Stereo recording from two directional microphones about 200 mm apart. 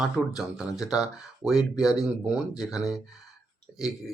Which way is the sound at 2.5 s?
20° left (ahead or behind).